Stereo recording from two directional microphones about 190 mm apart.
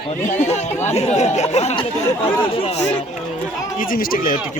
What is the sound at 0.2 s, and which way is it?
Speech, 40° left (ahead or behind).